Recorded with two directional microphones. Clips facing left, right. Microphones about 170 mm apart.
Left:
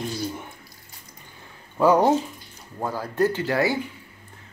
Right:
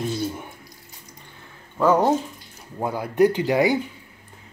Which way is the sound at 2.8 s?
15° right (ahead or behind).